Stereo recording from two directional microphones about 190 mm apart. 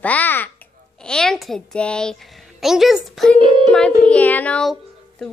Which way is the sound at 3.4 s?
25° right (ahead or behind).